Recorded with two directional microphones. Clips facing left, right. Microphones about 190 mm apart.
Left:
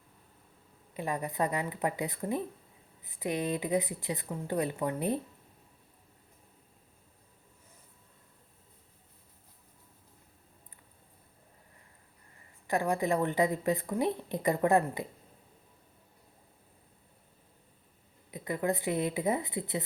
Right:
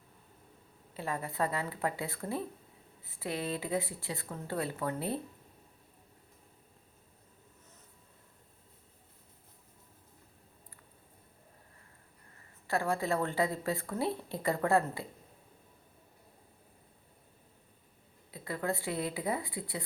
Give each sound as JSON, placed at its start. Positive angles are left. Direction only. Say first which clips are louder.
{"t": 0.9, "sound": "a woman's voice", "louder": "left 2 dB", "side_deg": 15}
{"t": 12.6, "sound": "a woman's voice", "louder": "left 3 dB", "side_deg": 15}
{"t": 18.3, "sound": "a woman's voice", "louder": "left 4 dB", "side_deg": 20}